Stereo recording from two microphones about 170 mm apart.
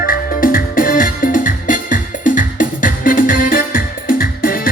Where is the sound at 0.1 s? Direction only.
55° left (ahead or behind).